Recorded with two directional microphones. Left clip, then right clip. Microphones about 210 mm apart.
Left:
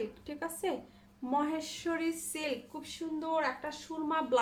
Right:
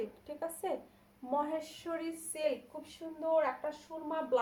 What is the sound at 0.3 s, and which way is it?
A woman's voice, 25° left (ahead or behind).